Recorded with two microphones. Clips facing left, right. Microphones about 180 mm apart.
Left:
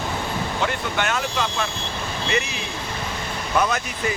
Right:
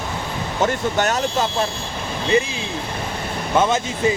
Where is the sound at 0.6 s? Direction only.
40° right (ahead or behind).